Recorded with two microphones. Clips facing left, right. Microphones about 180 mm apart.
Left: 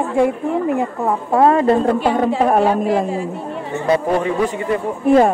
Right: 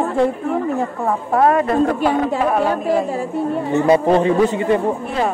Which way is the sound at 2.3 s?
45° left (ahead or behind).